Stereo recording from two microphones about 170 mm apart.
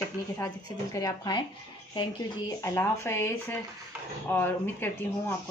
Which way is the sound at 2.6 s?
15° left (ahead or behind).